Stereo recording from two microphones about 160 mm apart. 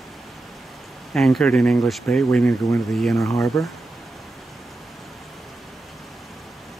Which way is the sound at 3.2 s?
20° left (ahead or behind).